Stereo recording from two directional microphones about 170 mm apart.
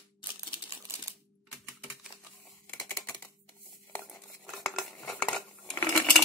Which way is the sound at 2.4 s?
Centre (ahead or behind).